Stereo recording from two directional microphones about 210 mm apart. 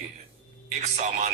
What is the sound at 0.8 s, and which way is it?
Speech, 35° right (ahead or behind).